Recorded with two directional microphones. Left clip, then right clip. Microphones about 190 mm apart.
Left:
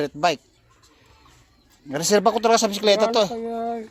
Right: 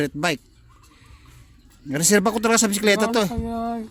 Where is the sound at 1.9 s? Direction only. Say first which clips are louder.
Left 1 dB; 20° right (ahead or behind).